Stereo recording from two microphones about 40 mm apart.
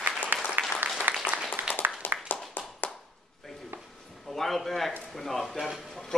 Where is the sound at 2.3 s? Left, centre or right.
Left.